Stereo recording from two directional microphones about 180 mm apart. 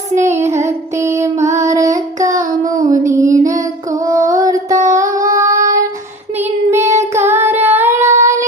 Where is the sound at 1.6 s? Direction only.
15° right (ahead or behind).